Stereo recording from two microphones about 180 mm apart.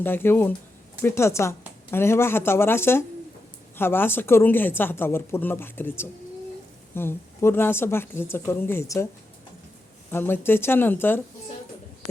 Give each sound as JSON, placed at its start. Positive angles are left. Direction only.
{"t": 0.0, "sound": "speech", "side_deg": 10}
{"t": 10.1, "sound": "speech", "side_deg": 10}